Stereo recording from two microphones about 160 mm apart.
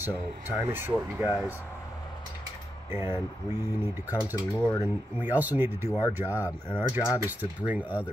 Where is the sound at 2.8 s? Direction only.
15° right (ahead or behind).